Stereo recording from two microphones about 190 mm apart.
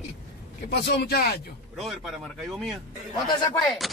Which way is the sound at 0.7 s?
55° left (ahead or behind).